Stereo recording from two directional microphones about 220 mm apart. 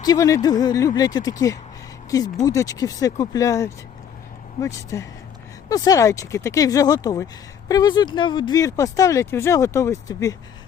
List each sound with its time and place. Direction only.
0.0 s speech: 15° left (ahead or behind)